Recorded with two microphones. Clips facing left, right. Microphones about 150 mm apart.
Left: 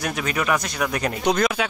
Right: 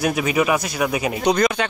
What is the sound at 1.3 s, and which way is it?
Speech, 5° left (ahead or behind).